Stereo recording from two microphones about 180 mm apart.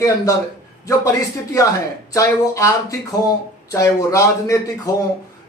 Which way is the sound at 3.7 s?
15° left (ahead or behind).